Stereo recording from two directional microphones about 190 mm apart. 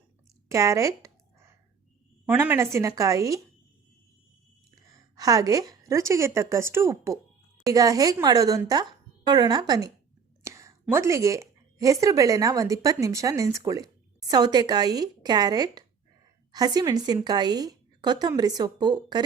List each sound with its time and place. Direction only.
0.4 s a sound: 15° right (ahead or behind)
2.2 s speech: 10° right (ahead or behind)
4.7 s a woman's voice: 20° right (ahead or behind)